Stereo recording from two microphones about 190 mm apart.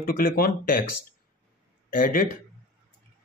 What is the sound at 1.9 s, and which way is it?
Speech, 45° left (ahead or behind).